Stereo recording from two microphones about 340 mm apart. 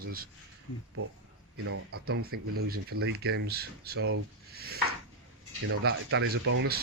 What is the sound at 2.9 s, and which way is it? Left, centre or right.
Speech, right.